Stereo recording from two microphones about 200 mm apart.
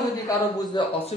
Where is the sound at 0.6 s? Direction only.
20° left (ahead or behind).